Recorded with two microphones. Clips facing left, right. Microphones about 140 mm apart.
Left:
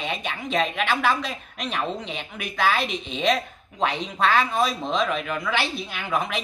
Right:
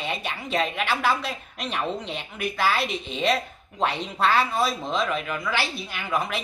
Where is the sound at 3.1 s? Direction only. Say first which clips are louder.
Left 1 dB; 10° right (ahead or behind).